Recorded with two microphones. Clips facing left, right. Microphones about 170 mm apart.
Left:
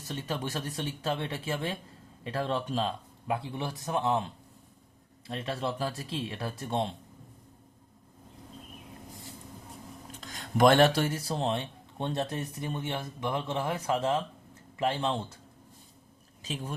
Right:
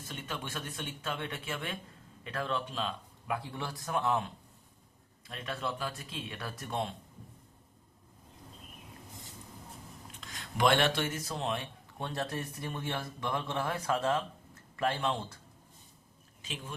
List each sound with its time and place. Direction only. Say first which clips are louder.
0.1 s speech: left 7 dB; 35° left (ahead or behind)
3.3 s speech: left 3 dB; 20° left (ahead or behind)
10.1 s speech: left 10 dB; 40° left (ahead or behind); by 15.2 s 20° left (ahead or behind)
16.4 s speech: left 6 dB; 40° left (ahead or behind)